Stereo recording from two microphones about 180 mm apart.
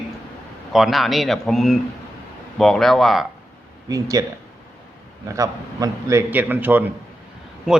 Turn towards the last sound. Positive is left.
turn(degrees=0)  # may be behind; listen again after turning